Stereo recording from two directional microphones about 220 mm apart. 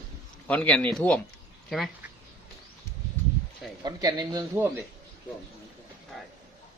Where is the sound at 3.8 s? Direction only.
20° right (ahead or behind).